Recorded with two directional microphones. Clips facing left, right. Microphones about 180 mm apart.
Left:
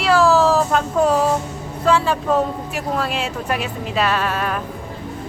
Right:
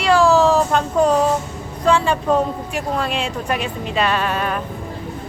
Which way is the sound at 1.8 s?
5° left (ahead or behind).